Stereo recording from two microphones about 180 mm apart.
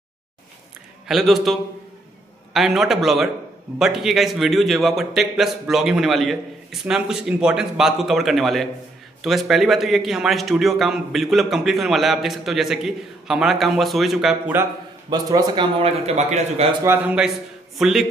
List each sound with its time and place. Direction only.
1.0 s a man's voice: centre (ahead or behind)
15.0 s speech: 20° right (ahead or behind); by 16.6 s 40° right (ahead or behind)
16.8 s a man's voice: 10° right (ahead or behind)